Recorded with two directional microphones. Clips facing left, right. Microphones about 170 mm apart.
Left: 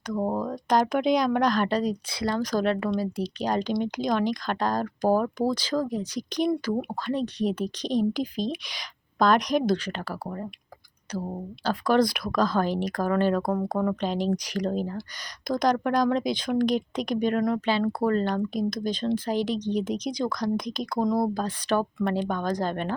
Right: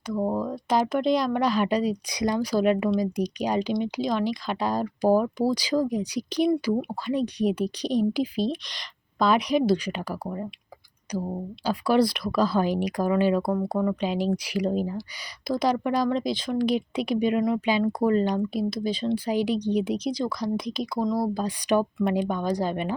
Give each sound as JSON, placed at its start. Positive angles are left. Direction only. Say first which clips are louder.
{"t": 0.2, "sound": "speech", "louder": "right 1 dB", "side_deg": 10}
{"t": 0.4, "sound": "a woman's voice", "louder": "left 1 dB", "side_deg": -5}